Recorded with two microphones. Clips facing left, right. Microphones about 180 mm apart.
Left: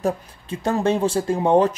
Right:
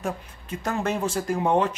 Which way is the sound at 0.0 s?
30° left (ahead or behind).